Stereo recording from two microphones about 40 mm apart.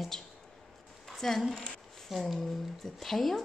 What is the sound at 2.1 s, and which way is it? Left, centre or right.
A woman's voice, centre.